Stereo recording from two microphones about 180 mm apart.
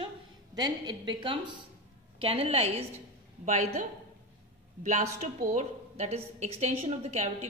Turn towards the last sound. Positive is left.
turn(degrees=-40)  # may be behind; listen again after turning